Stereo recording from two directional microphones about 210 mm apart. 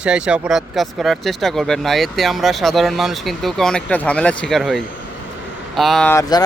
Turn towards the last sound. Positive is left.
turn(degrees=20)  # may be behind; listen again after turning